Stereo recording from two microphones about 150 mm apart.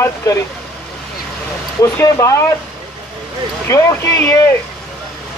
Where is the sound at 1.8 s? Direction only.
20° left (ahead or behind).